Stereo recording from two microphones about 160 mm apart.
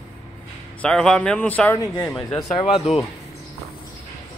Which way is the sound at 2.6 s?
35° left (ahead or behind).